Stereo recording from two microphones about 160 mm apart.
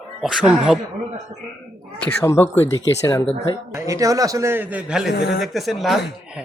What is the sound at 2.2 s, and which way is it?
Speech, 15° left (ahead or behind).